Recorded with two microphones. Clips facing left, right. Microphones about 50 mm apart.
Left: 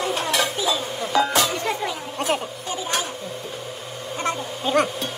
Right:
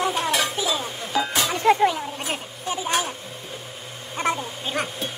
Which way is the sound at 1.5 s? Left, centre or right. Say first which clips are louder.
Right 7 dB; right.